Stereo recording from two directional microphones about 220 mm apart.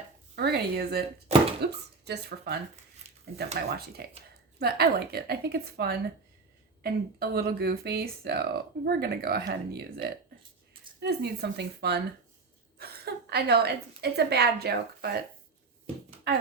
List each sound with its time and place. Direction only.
0.3 s a woman's voice: 45° right (ahead or behind)